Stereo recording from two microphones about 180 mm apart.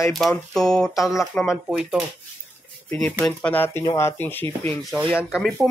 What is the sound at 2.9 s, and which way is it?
Speech, 10° left (ahead or behind).